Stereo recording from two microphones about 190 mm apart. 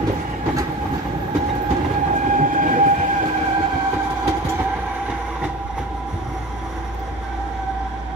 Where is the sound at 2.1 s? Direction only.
40° right (ahead or behind).